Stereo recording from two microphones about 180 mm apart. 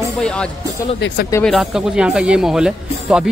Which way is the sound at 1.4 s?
Centre (ahead or behind).